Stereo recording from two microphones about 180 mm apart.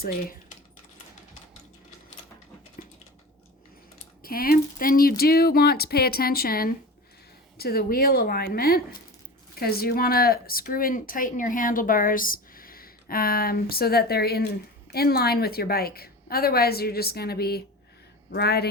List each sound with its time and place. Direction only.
4.2 s speech: 55° left (ahead or behind)